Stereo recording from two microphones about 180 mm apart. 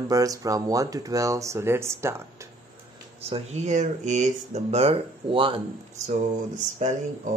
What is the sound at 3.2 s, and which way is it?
Speech, 35° right (ahead or behind).